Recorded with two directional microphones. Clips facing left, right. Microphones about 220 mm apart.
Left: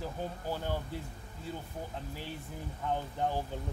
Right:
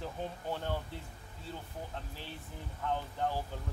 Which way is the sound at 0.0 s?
5° left (ahead or behind).